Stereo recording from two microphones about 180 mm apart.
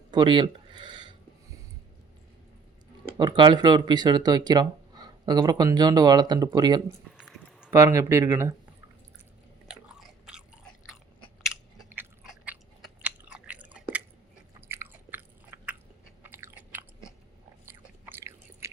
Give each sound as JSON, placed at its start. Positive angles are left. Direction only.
{"t": 0.1, "sound": "a sound", "side_deg": -25}
{"t": 3.2, "sound": "speech", "side_deg": -25}
{"t": 7.2, "sound": "a sound", "side_deg": -5}
{"t": 7.7, "sound": "speech", "side_deg": -15}
{"t": 9.6, "sound": "biting", "side_deg": -5}
{"t": 11.9, "sound": "chewing", "side_deg": -5}
{"t": 16.2, "sound": "biting", "side_deg": -10}
{"t": 17.7, "sound": "chewing", "side_deg": -15}